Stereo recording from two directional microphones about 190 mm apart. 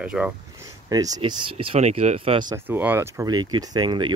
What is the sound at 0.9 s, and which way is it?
Speech, 20° right (ahead or behind).